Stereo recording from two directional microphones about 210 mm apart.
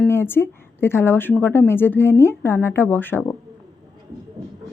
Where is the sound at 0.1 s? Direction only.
10° left (ahead or behind).